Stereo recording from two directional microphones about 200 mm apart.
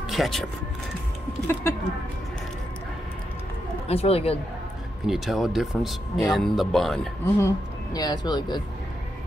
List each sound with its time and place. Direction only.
0.1 s speech: centre (ahead or behind)
1.5 s a sound: 15° left (ahead or behind)
3.8 s speech: 30° left (ahead or behind)
5.0 s speech: centre (ahead or behind)
7.3 s speech: 15° left (ahead or behind)